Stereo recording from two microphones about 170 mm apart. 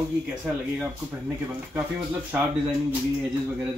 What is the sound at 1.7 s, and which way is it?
Speech, 10° right (ahead or behind).